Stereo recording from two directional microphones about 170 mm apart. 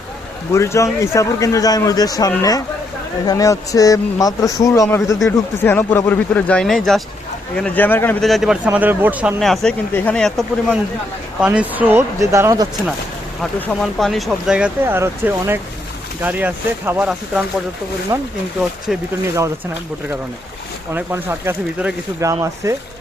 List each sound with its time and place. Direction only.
0.5 s a man's voice: 15° left (ahead or behind)
8.3 s speech: centre (ahead or behind)
11.3 s speech: 5° right (ahead or behind)
13.4 s speech: 5° left (ahead or behind)
18.1 s speech: 15° right (ahead or behind)
18.9 s speech: centre (ahead or behind)
20.9 s speech: 15° right (ahead or behind)